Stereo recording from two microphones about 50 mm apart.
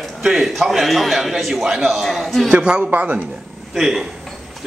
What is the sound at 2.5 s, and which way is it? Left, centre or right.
Speech, right.